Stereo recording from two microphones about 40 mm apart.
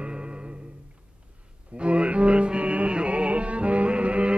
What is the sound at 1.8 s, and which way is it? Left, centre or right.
Music, right.